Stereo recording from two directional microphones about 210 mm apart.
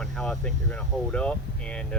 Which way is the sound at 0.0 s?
5° left (ahead or behind).